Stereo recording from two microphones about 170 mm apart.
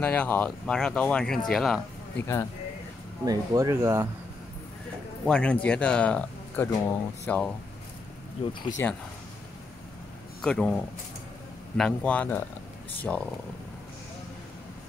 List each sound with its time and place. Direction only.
0.0 s speech: 10° left (ahead or behind)
3.3 s speech: 20° right (ahead or behind)
5.2 s speech: 5° left (ahead or behind)
8.8 s speech: 15° left (ahead or behind)
10.4 s speech: 5° left (ahead or behind)